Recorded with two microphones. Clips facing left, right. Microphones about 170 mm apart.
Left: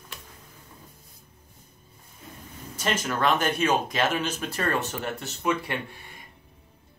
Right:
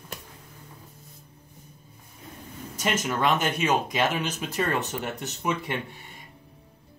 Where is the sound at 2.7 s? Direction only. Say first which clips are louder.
Right 1 dB; 20° right (ahead or behind).